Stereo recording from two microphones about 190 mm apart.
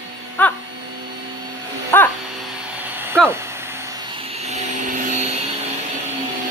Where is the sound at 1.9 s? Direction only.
10° left (ahead or behind).